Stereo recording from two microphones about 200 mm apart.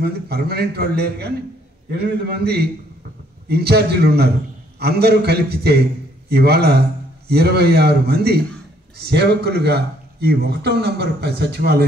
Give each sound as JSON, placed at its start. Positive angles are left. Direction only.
{"t": 0.0, "sound": "a man's voice", "side_deg": -50}